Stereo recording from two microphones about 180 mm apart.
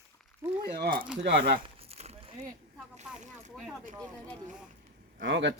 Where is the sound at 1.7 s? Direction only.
35° right (ahead or behind).